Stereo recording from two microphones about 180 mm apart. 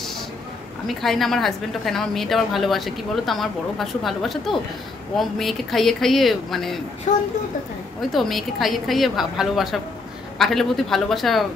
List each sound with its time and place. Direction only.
0.8 s a woman's voice: centre (ahead or behind)
7.1 s a woman's voice: 45° left (ahead or behind)
8.1 s a woman's voice: centre (ahead or behind)